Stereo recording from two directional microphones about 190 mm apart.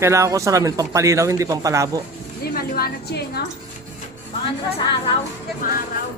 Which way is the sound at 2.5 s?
55° left (ahead or behind).